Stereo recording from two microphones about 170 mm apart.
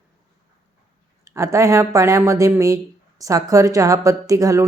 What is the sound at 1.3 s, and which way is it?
Speech, 20° right (ahead or behind).